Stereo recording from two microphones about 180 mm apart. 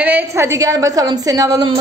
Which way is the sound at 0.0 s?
10° right (ahead or behind).